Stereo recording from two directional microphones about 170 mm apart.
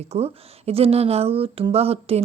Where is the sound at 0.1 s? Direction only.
35° right (ahead or behind).